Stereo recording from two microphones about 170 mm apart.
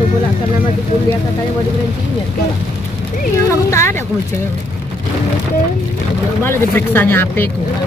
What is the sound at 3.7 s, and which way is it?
Speech, 15° left (ahead or behind).